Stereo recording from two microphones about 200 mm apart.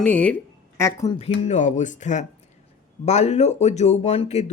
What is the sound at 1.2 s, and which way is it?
Speech, 35° left (ahead or behind).